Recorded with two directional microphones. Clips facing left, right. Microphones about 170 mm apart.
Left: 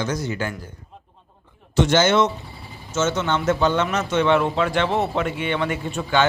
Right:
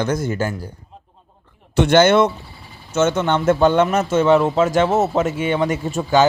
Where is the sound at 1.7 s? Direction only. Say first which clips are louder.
Right 4 dB; 60° right (ahead or behind).